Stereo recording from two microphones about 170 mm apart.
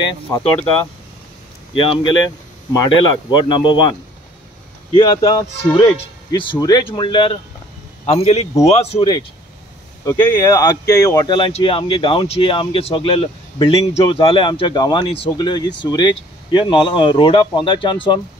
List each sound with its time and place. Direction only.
1.8 s speech: 25° left (ahead or behind)
4.9 s speech: 25° left (ahead or behind)
10.0 s speech: 25° left (ahead or behind)